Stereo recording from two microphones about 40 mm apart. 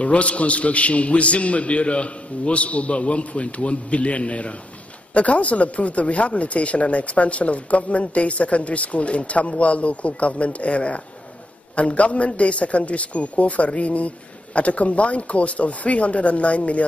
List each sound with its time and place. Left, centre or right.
0.0 s speech: left